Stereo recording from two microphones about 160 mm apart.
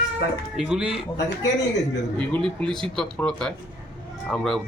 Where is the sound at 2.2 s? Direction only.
5° left (ahead or behind).